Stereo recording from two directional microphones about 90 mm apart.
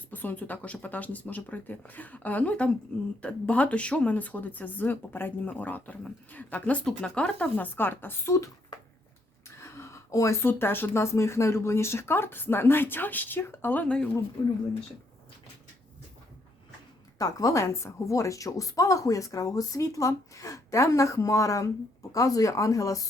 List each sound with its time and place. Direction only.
0.1 s a woman's voice: 20° left (ahead or behind)
9.6 s speech: 30° left (ahead or behind)
14.4 s speech: 50° left (ahead or behind)
17.2 s a woman's voice: 40° left (ahead or behind)